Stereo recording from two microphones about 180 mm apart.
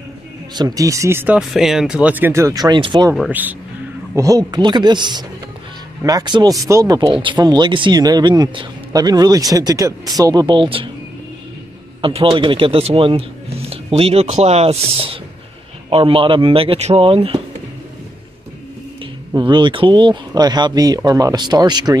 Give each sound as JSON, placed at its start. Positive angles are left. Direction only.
{"t": 0.6, "sound": "speech", "side_deg": -20}
{"t": 3.2, "sound": "speech", "side_deg": -10}
{"t": 12.0, "sound": "speech", "side_deg": -30}
{"t": 19.3, "sound": "speech", "side_deg": -25}